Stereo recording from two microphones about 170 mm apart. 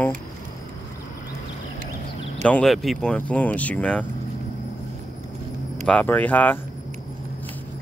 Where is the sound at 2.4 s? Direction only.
5° left (ahead or behind).